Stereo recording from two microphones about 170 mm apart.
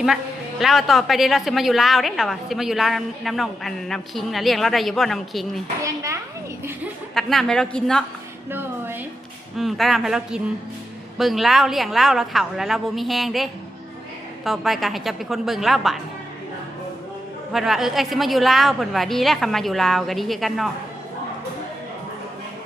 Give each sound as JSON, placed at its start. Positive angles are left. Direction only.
{"t": 0.6, "sound": "a woman's voice", "side_deg": 0}
{"t": 5.8, "sound": "a child's voice", "side_deg": -20}
{"t": 7.1, "sound": "a woman's voice", "side_deg": 0}
{"t": 8.4, "sound": "music", "side_deg": -15}
{"t": 9.6, "sound": "a woman's voice", "side_deg": 0}
{"t": 17.5, "sound": "a woman's voice", "side_deg": 0}